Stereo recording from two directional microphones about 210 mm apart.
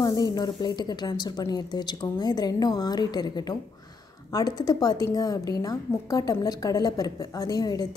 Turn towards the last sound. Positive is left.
turn(degrees=20)  # may be behind; listen again after turning